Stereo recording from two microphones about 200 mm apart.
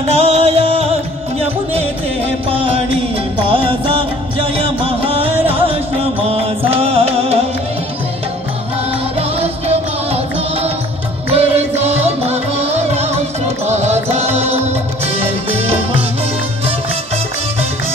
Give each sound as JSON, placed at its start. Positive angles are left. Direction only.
{"t": 0.1, "sound": "music", "side_deg": -30}
{"t": 2.5, "sound": "music", "side_deg": -25}
{"t": 9.4, "sound": "music", "side_deg": -30}